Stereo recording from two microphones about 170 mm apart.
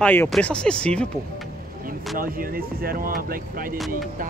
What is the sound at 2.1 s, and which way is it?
Speech, 55° right (ahead or behind).